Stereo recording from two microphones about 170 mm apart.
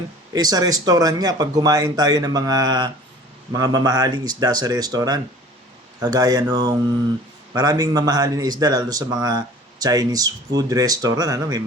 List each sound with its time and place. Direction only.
0.3 s speech: 20° right (ahead or behind)